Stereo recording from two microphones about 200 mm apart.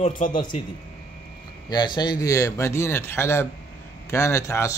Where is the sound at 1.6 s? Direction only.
20° left (ahead or behind).